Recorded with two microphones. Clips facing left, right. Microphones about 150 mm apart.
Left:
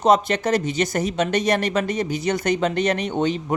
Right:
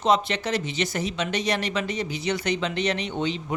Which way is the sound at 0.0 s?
45° left (ahead or behind).